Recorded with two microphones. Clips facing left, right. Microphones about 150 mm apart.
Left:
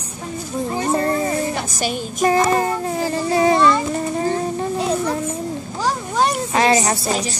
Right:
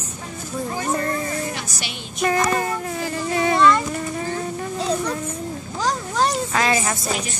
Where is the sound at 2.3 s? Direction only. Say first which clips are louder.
Left 3 dB; 25° left (ahead or behind).